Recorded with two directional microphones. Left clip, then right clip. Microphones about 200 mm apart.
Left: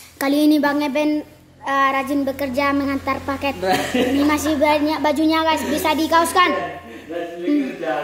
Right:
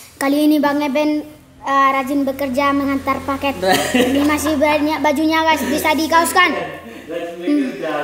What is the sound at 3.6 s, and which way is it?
Speech, 20° right (ahead or behind).